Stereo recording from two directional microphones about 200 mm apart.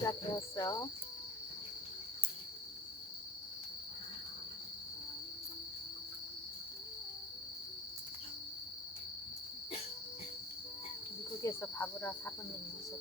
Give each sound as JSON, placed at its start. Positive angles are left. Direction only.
{"t": 0.0, "sound": "cricket", "side_deg": 15}
{"t": 0.5, "sound": "speech", "side_deg": 20}
{"t": 11.4, "sound": "cricket", "side_deg": 10}